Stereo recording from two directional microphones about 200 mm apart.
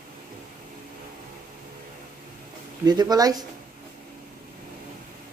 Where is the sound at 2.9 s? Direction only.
20° right (ahead or behind).